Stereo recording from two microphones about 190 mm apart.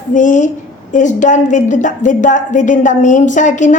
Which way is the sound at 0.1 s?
40° left (ahead or behind).